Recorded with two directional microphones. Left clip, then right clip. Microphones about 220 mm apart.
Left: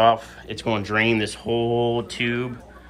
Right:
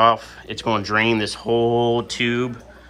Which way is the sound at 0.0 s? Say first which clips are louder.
Right 1 dB; 5° right (ahead or behind).